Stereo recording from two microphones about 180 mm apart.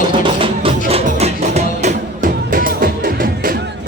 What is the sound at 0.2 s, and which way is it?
Music, 30° right (ahead or behind).